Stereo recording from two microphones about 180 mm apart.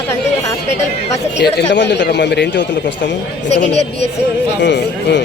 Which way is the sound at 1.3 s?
75° left (ahead or behind).